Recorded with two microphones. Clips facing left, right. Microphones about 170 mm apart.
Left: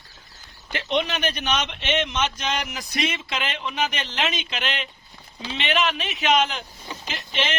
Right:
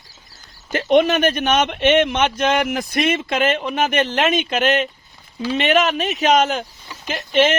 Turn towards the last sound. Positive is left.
turn(degrees=-50)  # may be behind; listen again after turning